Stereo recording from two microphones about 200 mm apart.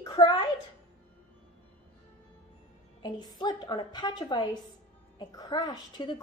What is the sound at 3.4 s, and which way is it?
A woman's voice, 20° left (ahead or behind).